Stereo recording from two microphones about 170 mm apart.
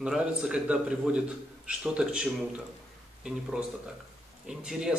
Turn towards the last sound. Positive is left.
turn(degrees=-5)  # may be behind; listen again after turning